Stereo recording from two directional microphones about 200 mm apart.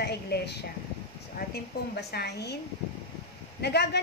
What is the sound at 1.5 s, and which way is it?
A woman's voice, 55° left (ahead or behind).